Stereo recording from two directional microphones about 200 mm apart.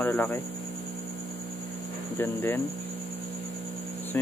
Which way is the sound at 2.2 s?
10° left (ahead or behind).